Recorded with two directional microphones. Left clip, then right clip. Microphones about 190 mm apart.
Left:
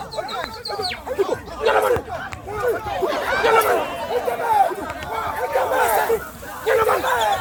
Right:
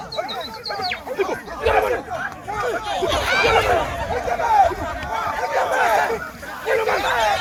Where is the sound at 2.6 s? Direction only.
40° left (ahead or behind).